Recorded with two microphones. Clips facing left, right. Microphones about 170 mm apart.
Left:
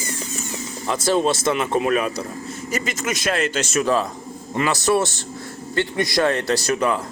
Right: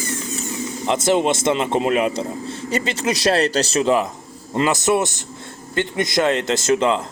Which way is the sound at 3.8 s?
20° right (ahead or behind).